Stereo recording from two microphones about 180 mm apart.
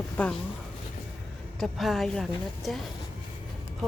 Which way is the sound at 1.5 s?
Centre (ahead or behind).